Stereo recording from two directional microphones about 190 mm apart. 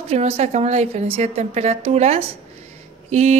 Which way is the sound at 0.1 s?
35° right (ahead or behind).